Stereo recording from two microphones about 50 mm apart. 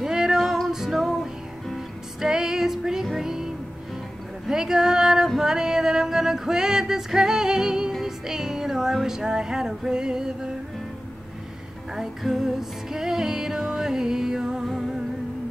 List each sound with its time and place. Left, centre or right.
0.0 s music: centre
5.4 s female singing: centre
7.9 s music: centre
11.9 s music: centre